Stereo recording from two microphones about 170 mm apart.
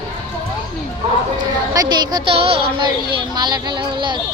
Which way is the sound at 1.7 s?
25° right (ahead or behind).